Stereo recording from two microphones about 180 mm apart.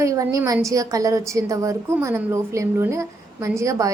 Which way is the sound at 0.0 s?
20° right (ahead or behind).